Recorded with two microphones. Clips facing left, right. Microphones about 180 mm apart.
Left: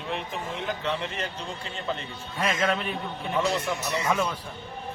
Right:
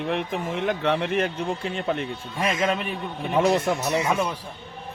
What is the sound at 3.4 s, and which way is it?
Speech, 55° right (ahead or behind).